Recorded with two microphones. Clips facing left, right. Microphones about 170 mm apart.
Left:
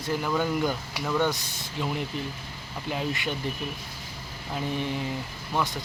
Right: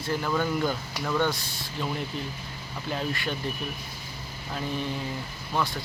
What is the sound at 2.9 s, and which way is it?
Speech, 15° left (ahead or behind).